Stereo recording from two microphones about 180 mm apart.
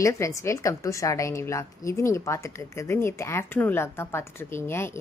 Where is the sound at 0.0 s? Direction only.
15° left (ahead or behind).